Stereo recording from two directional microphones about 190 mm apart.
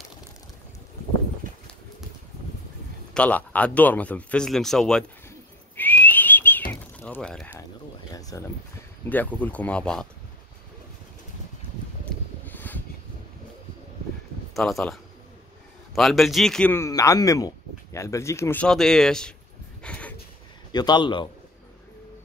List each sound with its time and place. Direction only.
1.4 s horse: 45° right (ahead or behind)
3.2 s speech: 10° left (ahead or behind)
5.8 s whistling: 10° left (ahead or behind)
6.7 s a sound: 5° left (ahead or behind)
8.1 s a man's voice: 20° left (ahead or behind)
9.1 s speech: 10° left (ahead or behind)
12.0 s a sound: 10° left (ahead or behind)
14.5 s speech: centre (ahead or behind)
19.8 s a sound: 5° left (ahead or behind)
20.7 s a man's voice: 20° left (ahead or behind)